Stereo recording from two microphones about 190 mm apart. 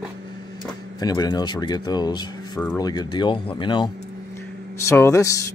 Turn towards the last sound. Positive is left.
turn(degrees=15)  # may be behind; listen again after turning